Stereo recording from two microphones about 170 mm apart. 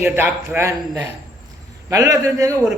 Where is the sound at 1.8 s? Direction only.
20° right (ahead or behind).